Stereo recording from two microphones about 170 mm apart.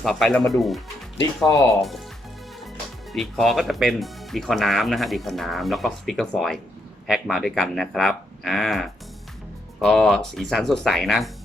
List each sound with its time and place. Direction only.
0.0 s speech: centre (ahead or behind)
1.5 s speech: 20° left (ahead or behind)
3.1 s speech: centre (ahead or behind)